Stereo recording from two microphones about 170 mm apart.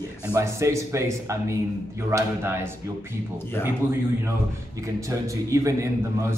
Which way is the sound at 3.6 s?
15° left (ahead or behind).